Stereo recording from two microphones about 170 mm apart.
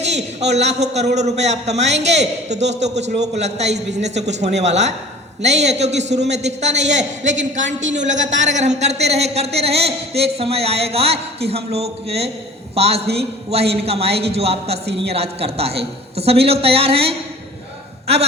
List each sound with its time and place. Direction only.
0.1 s a man's voice: 40° right (ahead or behind)
7.6 s a woman's voice: 90° right
7.9 s a man's voice: 45° right (ahead or behind)